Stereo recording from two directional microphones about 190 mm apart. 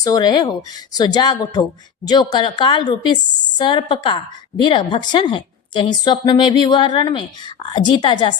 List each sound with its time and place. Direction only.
0.0 s a woman's voice: 20° left (ahead or behind)